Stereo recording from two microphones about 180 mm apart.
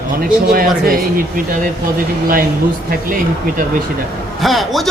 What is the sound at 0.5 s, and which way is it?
Speech, 55° right (ahead or behind).